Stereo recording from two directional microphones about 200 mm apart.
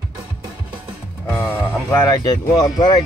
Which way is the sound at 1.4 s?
15° left (ahead or behind).